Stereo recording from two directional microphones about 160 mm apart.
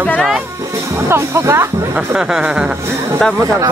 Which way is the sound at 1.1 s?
15° right (ahead or behind).